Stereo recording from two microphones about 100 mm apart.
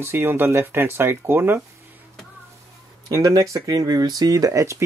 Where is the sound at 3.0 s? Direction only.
40° right (ahead or behind).